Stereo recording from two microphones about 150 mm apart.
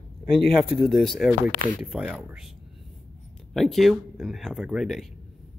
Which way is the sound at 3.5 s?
Centre (ahead or behind).